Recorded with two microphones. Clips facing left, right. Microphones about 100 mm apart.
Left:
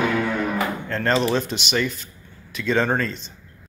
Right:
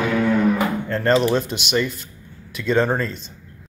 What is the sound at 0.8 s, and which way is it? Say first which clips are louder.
Speech: right 3 dB; 10° right (ahead or behind).